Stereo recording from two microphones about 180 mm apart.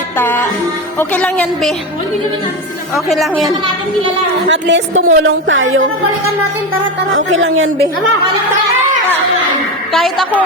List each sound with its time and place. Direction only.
0.2 s a woman's voice: 10° left (ahead or behind)
2.9 s a woman's voice: centre (ahead or behind)
4.4 s a woman's voice: 85° right
7.1 s a woman's voice: 90° right
9.9 s a woman's voice: centre (ahead or behind)